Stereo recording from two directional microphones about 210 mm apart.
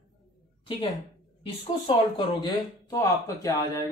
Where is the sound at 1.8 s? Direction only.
20° left (ahead or behind).